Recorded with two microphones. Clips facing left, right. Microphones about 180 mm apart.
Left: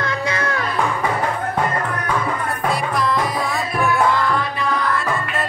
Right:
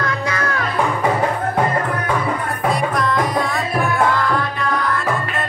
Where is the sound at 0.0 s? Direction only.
25° left (ahead or behind).